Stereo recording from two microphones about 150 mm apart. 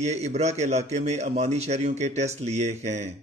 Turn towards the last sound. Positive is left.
turn(degrees=-50)  # may be behind; listen again after turning